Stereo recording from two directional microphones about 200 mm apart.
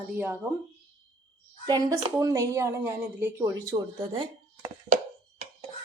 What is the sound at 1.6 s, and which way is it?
Speech, 20° right (ahead or behind).